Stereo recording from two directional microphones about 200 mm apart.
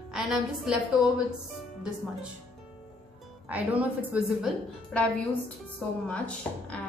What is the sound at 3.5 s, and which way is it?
A woman's voice, 5° right (ahead or behind).